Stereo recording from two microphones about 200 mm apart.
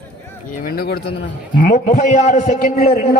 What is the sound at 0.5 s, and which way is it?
Speech, 45° left (ahead or behind).